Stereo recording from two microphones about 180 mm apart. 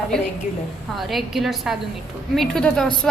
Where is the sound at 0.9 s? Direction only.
Centre (ahead or behind).